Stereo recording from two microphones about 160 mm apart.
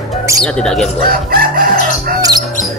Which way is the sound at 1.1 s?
65° right (ahead or behind).